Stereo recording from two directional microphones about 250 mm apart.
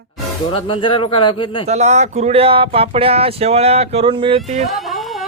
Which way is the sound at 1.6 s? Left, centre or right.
Right.